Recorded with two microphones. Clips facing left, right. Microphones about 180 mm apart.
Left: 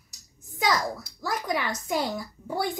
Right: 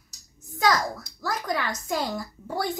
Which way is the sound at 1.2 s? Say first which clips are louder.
Even; 15° left (ahead or behind).